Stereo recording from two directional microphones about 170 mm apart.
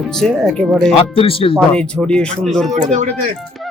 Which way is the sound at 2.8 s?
45° right (ahead or behind).